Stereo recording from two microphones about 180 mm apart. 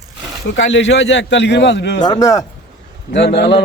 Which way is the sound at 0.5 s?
90° left.